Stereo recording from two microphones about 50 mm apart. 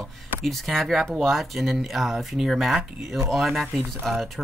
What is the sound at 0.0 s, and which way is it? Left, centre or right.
Speech, centre.